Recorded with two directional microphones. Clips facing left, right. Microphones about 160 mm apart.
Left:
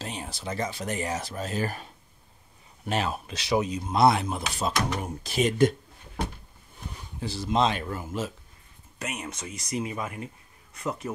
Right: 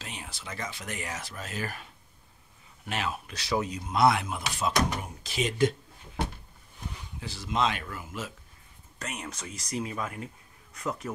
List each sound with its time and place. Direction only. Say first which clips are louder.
0.0 s speech: left 7 dB; 35° left (ahead or behind)
3.3 s speech: left 5 dB; 20° left (ahead or behind); by 5.8 s 50° left (ahead or behind)
7.2 s speech: left 5 dB; 35° left (ahead or behind)
8.9 s speech: left 3 dB; 10° left (ahead or behind)